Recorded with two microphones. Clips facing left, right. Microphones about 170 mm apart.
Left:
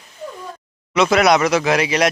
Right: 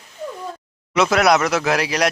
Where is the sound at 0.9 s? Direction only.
Centre (ahead or behind).